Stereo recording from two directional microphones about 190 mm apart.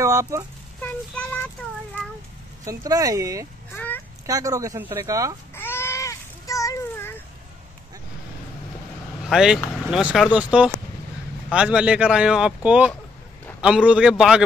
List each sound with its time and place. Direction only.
0.0 s speech: 15° right (ahead or behind)
0.7 s speech: 5° left (ahead or behind)
2.6 s speech: 15° right (ahead or behind)
3.7 s a sound: 10° left (ahead or behind)
4.3 s speech: 15° right (ahead or behind)
5.5 s a sound: 10° left (ahead or behind)
9.3 s speech: 5° right (ahead or behind)